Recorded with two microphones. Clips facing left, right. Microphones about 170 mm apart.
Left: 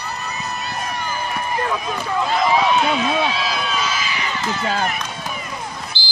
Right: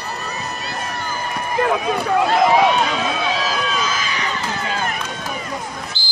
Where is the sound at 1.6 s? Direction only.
60° right (ahead or behind).